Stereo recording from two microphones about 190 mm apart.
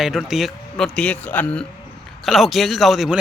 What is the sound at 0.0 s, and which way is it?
Speech, centre (ahead or behind).